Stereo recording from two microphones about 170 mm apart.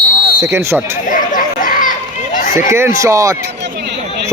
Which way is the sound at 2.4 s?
50° left (ahead or behind).